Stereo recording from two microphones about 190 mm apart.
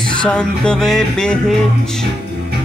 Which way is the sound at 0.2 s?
5° left (ahead or behind).